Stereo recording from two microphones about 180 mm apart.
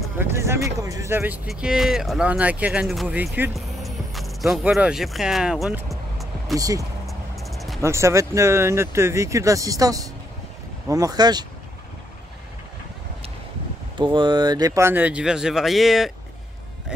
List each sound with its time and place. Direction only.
0.2 s speech: 15° right (ahead or behind)
3.5 s music: centre (ahead or behind)
6.5 s speech: 20° right (ahead or behind)
7.1 s music: centre (ahead or behind)
7.8 s speech: 15° right (ahead or behind)
13.9 s speech: 25° right (ahead or behind); by 16.1 s centre (ahead or behind)